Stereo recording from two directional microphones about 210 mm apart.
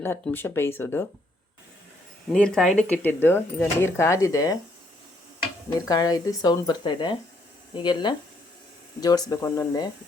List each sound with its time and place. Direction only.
0.0 s speech: 10° left (ahead or behind)
2.3 s speech: 5° left (ahead or behind)
5.9 s speech: 15° left (ahead or behind)